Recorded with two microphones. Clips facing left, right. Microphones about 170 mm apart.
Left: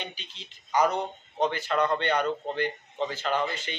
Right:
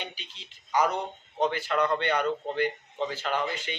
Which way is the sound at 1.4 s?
5° right (ahead or behind).